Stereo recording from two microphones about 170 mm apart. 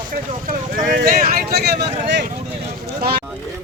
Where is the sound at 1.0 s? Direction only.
60° right (ahead or behind).